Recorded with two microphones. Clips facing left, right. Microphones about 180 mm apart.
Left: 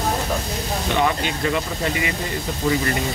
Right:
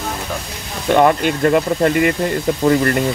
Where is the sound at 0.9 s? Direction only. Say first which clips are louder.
Right 9 dB; 55° right (ahead or behind).